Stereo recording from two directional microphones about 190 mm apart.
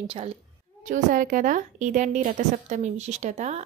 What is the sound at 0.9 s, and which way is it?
A woman's voice, 45° right (ahead or behind).